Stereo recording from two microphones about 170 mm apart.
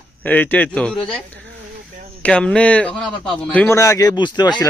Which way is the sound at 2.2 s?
5° left (ahead or behind).